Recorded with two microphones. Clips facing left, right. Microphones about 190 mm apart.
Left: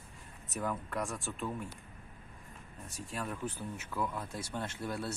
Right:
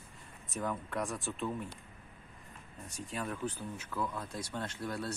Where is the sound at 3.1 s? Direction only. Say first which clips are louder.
Right 1 dB; centre (ahead or behind).